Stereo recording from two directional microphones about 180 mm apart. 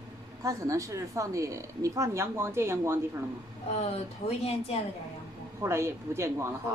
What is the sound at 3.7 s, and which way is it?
Speech, 35° left (ahead or behind).